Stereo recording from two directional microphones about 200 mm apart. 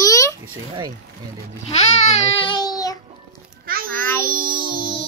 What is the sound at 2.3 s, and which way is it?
Child singing, 20° left (ahead or behind).